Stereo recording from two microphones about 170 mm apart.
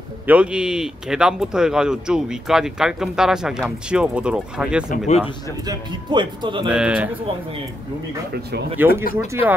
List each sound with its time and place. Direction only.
0.3 s a man's voice: 5° right (ahead or behind)
4.9 s speech: 45° left (ahead or behind)
5.7 s speech: 25° right (ahead or behind)
6.7 s speech: 5° right (ahead or behind)
8.7 s speech: 10° right (ahead or behind)